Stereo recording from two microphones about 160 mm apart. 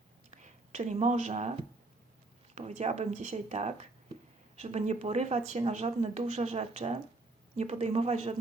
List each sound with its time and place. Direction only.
0.3 s speech: 45° right (ahead or behind)
2.6 s speech: 45° right (ahead or behind)